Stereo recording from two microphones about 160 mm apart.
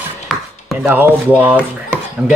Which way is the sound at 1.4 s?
10° right (ahead or behind).